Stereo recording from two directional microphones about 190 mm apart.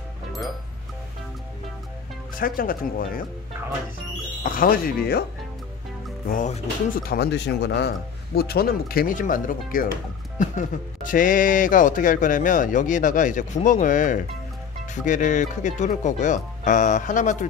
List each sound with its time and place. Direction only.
2.3 s speech: 50° left (ahead or behind)
4.4 s speech: 45° left (ahead or behind)
6.2 s speech: 40° left (ahead or behind)